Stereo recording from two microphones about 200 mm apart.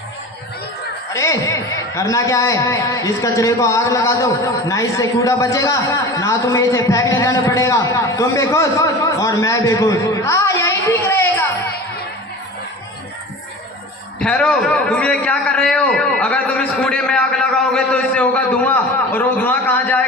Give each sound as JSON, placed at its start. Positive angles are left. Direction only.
{"t": 1.1, "sound": "a man's voice", "side_deg": 15}
{"t": 14.2, "sound": "a man's voice", "side_deg": 5}